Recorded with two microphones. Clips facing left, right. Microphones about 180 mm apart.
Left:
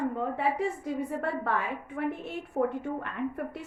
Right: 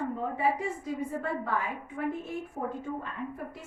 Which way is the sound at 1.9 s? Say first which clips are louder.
Even; 65° left (ahead or behind).